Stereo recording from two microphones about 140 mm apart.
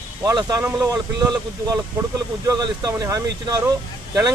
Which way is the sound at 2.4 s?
25° right (ahead or behind).